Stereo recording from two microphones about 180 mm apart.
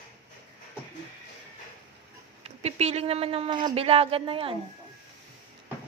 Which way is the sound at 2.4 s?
35° right (ahead or behind).